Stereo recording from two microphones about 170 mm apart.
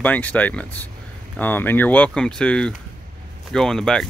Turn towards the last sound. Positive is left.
turn(degrees=5)  # may be behind; listen again after turning